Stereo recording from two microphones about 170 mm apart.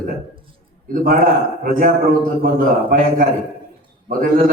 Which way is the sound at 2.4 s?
55° right (ahead or behind).